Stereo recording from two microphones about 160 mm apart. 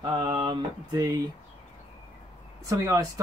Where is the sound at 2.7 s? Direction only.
20° right (ahead or behind).